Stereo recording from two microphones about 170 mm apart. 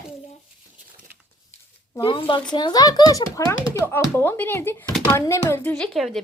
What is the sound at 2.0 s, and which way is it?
Speech, 30° left (ahead or behind).